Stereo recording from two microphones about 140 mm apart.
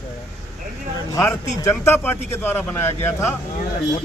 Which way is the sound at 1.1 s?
20° left (ahead or behind).